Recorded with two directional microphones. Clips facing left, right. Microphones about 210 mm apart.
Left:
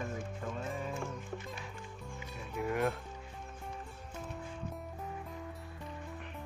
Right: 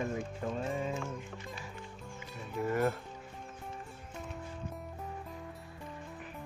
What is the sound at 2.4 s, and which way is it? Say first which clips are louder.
Speech: right 2 dB; centre (ahead or behind).